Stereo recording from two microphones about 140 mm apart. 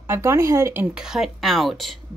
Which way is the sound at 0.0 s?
20° right (ahead or behind).